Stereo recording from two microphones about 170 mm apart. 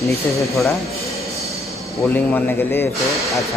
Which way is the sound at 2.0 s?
10° left (ahead or behind).